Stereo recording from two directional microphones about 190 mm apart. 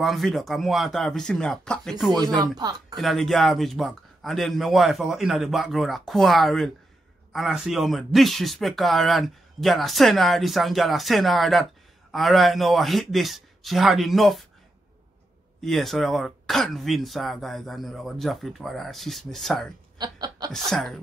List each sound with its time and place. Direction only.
0.0 s speech: centre (ahead or behind)
2.2 s speech: 20° right (ahead or behind)
3.0 s speech: centre (ahead or behind)
15.6 s speech: centre (ahead or behind)
20.0 s chuckle: 20° right (ahead or behind)
20.5 s speech: centre (ahead or behind)